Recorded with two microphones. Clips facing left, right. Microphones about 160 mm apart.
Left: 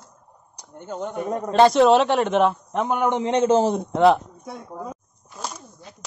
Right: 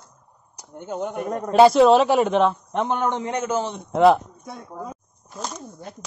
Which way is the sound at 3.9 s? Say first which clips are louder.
Right 2 dB; centre (ahead or behind).